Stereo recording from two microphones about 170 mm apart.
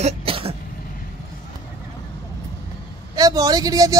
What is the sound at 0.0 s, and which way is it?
Cough, 35° right (ahead or behind).